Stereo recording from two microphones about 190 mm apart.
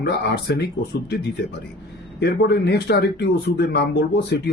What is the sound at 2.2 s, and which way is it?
Speech, 60° left (ahead or behind).